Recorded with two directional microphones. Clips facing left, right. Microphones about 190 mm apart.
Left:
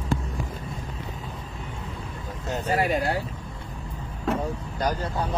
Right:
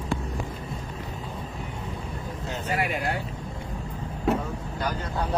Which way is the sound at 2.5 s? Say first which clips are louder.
Left 5 dB; 35° left (ahead or behind).